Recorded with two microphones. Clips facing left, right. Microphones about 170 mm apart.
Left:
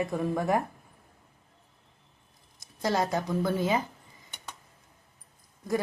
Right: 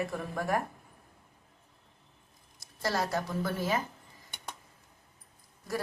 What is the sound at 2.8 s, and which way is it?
Speech, 20° left (ahead or behind).